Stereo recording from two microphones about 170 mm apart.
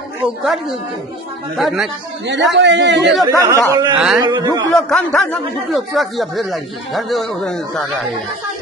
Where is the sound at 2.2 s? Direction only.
90° right.